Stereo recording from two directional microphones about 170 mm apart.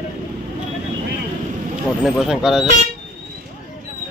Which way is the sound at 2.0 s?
Centre (ahead or behind).